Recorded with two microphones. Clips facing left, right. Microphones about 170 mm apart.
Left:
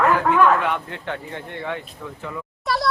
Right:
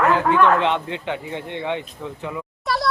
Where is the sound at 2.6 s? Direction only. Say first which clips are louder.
Even; centre (ahead or behind).